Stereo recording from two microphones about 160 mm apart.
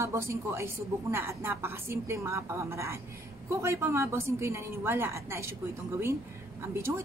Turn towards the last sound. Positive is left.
turn(degrees=-15)  # may be behind; listen again after turning